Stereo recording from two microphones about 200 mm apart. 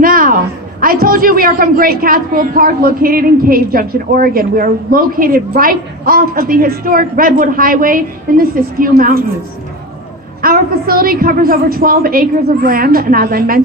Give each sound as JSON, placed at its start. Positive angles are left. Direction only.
{"t": 0.0, "sound": "a woman's voice", "side_deg": -45}
{"t": 10.4, "sound": "a woman's voice", "side_deg": -45}